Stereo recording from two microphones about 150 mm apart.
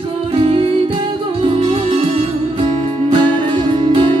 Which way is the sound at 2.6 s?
35° right (ahead or behind).